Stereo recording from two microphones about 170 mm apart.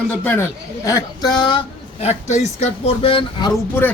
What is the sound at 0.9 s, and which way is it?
Speech, 20° left (ahead or behind).